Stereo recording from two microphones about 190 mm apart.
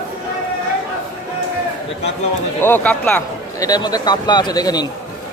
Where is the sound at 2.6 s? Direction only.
10° left (ahead or behind).